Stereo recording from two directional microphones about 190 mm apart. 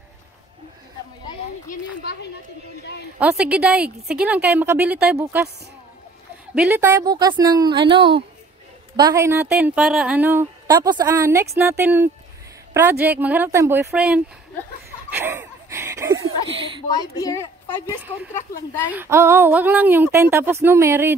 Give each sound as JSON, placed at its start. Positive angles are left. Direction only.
{"t": 3.2, "sound": "a woman's voice", "side_deg": -5}
{"t": 6.5, "sound": "a woman's voice", "side_deg": -5}
{"t": 15.0, "sound": "a sound", "side_deg": -10}
{"t": 16.8, "sound": "a woman's voice", "side_deg": 20}
{"t": 18.9, "sound": "a woman's voice", "side_deg": -10}